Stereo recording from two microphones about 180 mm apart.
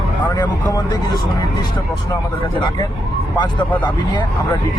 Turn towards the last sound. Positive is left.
turn(degrees=25)  # may be behind; listen again after turning